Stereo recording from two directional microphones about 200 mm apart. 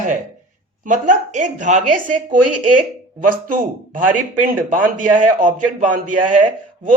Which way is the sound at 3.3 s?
45° right (ahead or behind).